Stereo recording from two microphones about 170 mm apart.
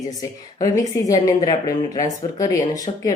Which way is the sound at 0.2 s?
20° left (ahead or behind).